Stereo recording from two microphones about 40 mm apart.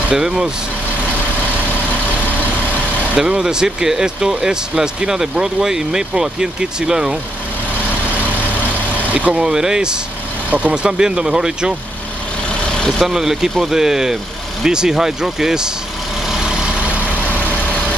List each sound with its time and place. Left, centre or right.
0.1 s speech: centre
3.2 s speech: centre
9.3 s speech: centre
13.0 s speech: centre
16.3 s vehicle: centre
17.5 s vehicle: left